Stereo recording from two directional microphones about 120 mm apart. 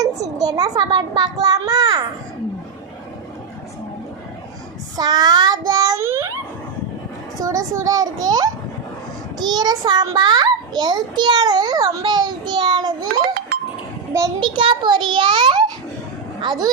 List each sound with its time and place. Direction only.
0.0 s a child's voice: 30° right (ahead or behind)
4.9 s a child's voice: 35° right (ahead or behind)
14.4 s a child's voice: 45° right (ahead or behind)